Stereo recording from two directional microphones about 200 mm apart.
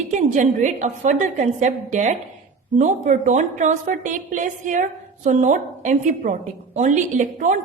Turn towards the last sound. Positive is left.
turn(degrees=-40)  # may be behind; listen again after turning